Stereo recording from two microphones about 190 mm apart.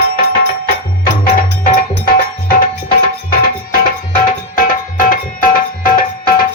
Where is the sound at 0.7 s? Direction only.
45° left (ahead or behind).